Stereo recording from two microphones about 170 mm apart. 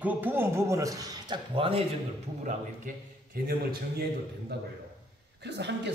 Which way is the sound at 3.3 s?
65° right (ahead or behind).